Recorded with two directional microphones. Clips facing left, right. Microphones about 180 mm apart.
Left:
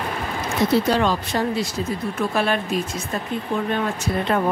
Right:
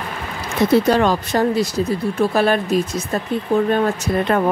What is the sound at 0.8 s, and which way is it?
Speech, 50° right (ahead or behind).